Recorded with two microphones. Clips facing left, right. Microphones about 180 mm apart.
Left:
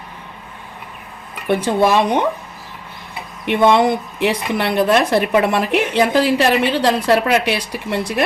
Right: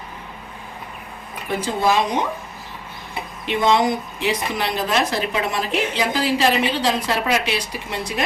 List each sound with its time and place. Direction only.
1.5 s speech: 65° left (ahead or behind)
3.4 s speech: 60° left (ahead or behind)